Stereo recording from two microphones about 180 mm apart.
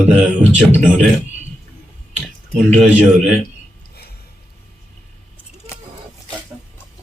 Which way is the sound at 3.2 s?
5° left (ahead or behind).